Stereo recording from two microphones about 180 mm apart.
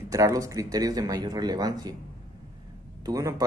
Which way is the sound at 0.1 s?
20° right (ahead or behind).